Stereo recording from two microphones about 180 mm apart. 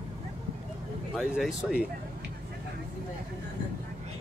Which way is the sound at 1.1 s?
5° right (ahead or behind).